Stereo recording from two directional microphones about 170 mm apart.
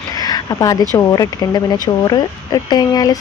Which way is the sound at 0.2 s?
25° left (ahead or behind).